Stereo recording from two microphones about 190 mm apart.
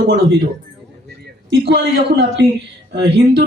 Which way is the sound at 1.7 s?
60° right (ahead or behind).